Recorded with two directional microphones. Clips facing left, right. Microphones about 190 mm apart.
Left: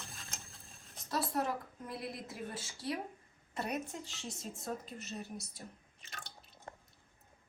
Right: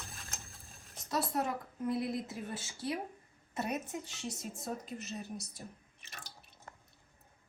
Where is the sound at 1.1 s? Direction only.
20° right (ahead or behind).